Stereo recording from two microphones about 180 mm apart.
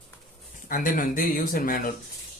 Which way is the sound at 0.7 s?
50° left (ahead or behind).